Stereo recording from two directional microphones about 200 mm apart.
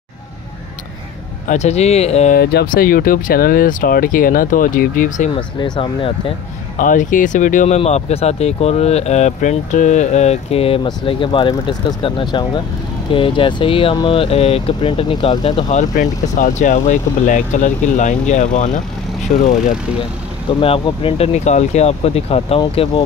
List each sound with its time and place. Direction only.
1.5 s speech: 35° left (ahead or behind)
2.3 s speech: 50° left (ahead or behind)
5.6 s speech: 25° left (ahead or behind)
6.8 s speech: 40° left (ahead or behind)
20.6 s speech: 30° left (ahead or behind)